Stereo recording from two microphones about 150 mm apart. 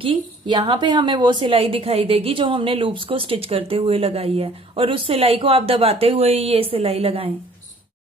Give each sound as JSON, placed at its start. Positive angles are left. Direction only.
{"t": 0.0, "sound": "a woman's voice", "side_deg": -35}